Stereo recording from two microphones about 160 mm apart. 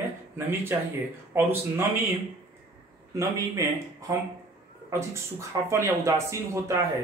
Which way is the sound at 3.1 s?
20° right (ahead or behind).